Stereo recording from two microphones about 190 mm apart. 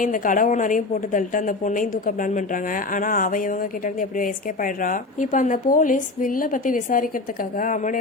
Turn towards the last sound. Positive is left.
turn(degrees=45)  # may be behind; listen again after turning